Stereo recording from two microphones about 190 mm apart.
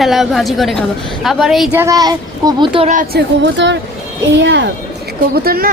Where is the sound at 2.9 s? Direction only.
45° right (ahead or behind).